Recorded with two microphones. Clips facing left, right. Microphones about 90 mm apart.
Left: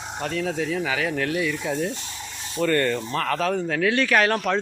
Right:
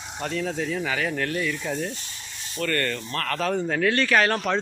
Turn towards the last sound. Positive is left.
turn(degrees=0)  # may be behind; listen again after turning